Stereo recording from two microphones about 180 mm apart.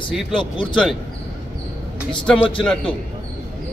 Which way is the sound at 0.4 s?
25° left (ahead or behind).